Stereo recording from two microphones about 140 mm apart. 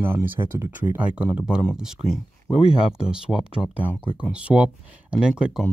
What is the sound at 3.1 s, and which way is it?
Speech, 5° right (ahead or behind).